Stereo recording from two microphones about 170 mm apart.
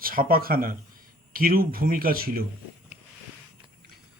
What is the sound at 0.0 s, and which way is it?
Speech, 60° right (ahead or behind).